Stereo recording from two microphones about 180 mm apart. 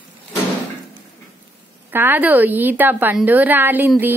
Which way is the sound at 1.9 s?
10° right (ahead or behind).